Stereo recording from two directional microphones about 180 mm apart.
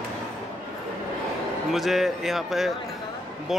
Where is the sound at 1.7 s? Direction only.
Centre (ahead or behind).